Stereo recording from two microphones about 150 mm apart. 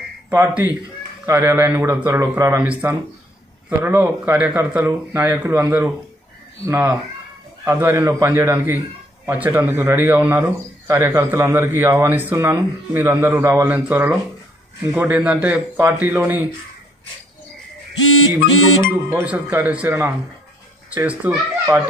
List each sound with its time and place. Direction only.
0.3 s a man's voice: 15° right (ahead or behind)
18.3 s a man's voice: 15° right (ahead or behind)